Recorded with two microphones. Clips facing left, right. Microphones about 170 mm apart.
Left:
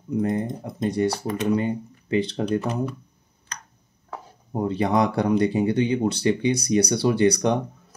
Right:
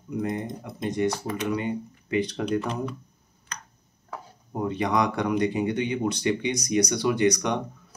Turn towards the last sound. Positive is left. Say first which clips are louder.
# left 3 dB
turn(degrees=35)  # may be behind; listen again after turning